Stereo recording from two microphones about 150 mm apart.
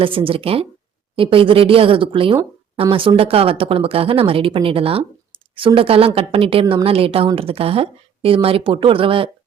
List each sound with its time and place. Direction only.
0.0 s speech: 35° right (ahead or behind)